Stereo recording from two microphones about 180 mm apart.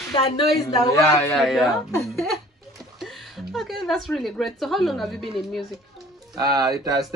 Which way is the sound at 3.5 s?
Centre (ahead or behind).